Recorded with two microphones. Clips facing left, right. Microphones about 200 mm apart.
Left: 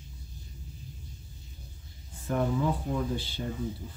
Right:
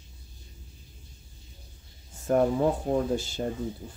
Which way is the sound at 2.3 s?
45° right (ahead or behind).